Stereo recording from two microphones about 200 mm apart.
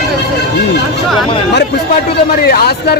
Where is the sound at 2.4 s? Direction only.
50° left (ahead or behind).